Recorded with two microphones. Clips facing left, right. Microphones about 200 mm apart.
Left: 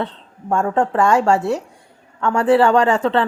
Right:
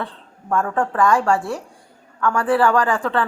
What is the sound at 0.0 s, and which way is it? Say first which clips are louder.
A woman's voice: left 5 dB; 25° left (ahead or behind).